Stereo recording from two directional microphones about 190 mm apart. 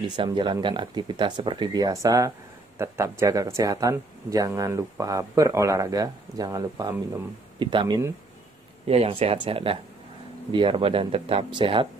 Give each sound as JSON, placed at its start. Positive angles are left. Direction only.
{"t": 0.1, "sound": "speech", "side_deg": -25}